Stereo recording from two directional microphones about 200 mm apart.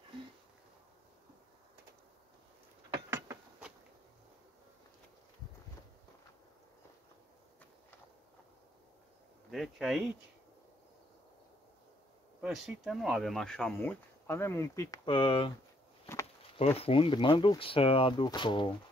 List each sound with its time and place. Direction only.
3.1 s a sound: 15° right (ahead or behind)
9.5 s speech: centre (ahead or behind)
12.4 s speech: centre (ahead or behind); by 15.5 s 25° left (ahead or behind)
16.5 s speech: 30° left (ahead or behind)